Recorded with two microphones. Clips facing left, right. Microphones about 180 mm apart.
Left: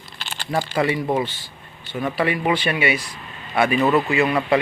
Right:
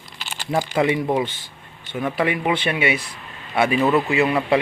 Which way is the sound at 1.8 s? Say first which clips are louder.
Even; 15° right (ahead or behind).